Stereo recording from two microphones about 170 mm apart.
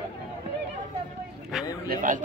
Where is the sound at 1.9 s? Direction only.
50° right (ahead or behind).